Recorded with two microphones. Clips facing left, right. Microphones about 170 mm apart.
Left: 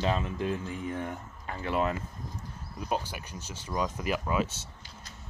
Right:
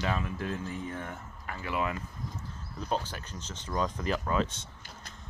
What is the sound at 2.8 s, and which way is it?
Speech, 10° left (ahead or behind).